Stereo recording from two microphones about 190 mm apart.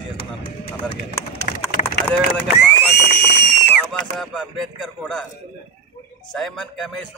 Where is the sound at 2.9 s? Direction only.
60° left (ahead or behind).